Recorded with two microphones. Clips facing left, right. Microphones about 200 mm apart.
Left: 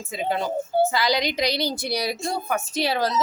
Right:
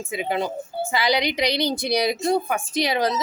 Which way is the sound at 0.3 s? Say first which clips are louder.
Left 2 dB; 20° right (ahead or behind).